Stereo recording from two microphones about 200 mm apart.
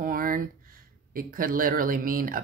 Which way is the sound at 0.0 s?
45° right (ahead or behind).